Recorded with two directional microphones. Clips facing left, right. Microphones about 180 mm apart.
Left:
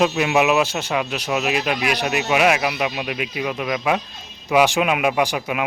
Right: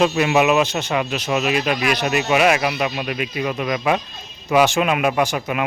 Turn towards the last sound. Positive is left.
turn(degrees=5)  # may be behind; listen again after turning